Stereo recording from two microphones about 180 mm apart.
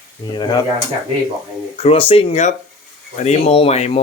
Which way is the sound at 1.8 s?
30° left (ahead or behind).